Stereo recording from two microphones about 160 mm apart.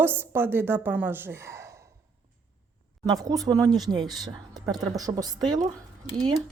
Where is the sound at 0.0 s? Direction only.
15° right (ahead or behind).